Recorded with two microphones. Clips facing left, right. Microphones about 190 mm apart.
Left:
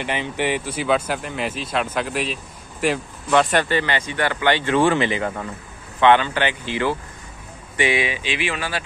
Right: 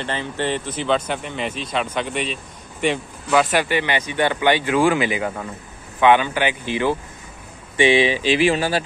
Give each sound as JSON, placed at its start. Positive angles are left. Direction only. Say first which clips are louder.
{"t": 0.0, "sound": "speech", "louder": "left 1 dB", "side_deg": 15}